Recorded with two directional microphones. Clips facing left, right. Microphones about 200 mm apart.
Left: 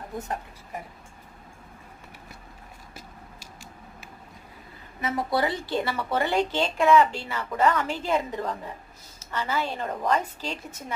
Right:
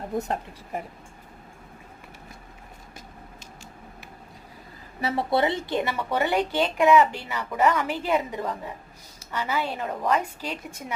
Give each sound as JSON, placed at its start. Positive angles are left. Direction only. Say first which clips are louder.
{"t": 0.2, "sound": "speech", "louder": "right 5 dB", "side_deg": -30}
{"t": 4.9, "sound": "a woman's voice", "louder": "right 2 dB", "side_deg": -30}